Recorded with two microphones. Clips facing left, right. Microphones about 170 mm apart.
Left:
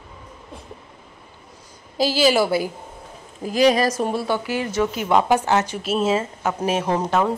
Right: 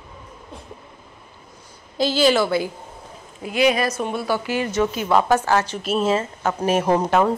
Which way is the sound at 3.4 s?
35° left (ahead or behind).